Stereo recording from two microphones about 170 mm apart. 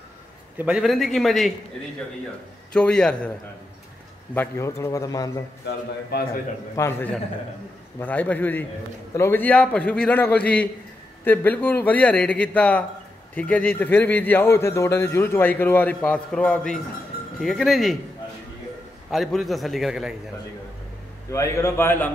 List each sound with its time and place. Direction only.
0.6 s a man's voice: 5° right (ahead or behind)
2.7 s a man's voice: 5° left (ahead or behind); by 5.4 s 20° left (ahead or behind)
5.7 s a man's voice: 65° left (ahead or behind)
6.7 s a man's voice: 15° left (ahead or behind)
19.0 s a man's voice: centre (ahead or behind)
21.3 s a man's voice: 15° left (ahead or behind)